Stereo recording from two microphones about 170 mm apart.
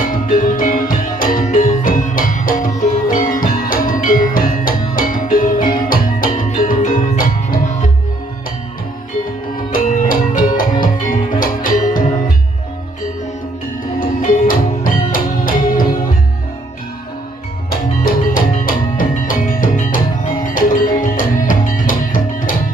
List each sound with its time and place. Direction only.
0.1 s music: 55° left (ahead or behind)
9.7 s music: 55° left (ahead or behind)
13.9 s music: 50° left (ahead or behind)
17.6 s music: 55° left (ahead or behind)